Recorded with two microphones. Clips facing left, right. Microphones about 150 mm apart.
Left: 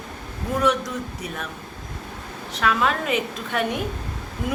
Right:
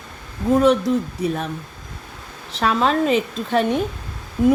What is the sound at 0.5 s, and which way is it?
Speech, 30° right (ahead or behind).